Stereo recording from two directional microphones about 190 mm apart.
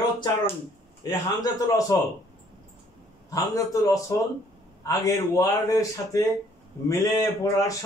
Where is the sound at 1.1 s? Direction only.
20° left (ahead or behind).